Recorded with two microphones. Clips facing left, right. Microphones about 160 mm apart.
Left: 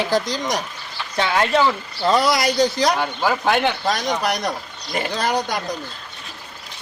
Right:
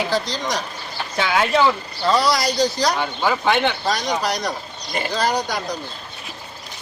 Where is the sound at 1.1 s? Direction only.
5° right (ahead or behind).